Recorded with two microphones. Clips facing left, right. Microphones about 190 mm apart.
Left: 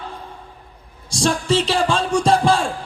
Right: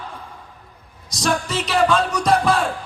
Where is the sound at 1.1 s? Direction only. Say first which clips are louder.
Left 4 dB; 30° left (ahead or behind).